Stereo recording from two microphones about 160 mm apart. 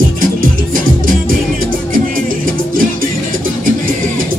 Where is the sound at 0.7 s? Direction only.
60° right (ahead or behind).